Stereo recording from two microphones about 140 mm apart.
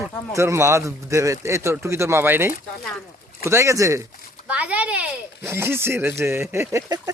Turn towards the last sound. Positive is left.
turn(degrees=-20)  # may be behind; listen again after turning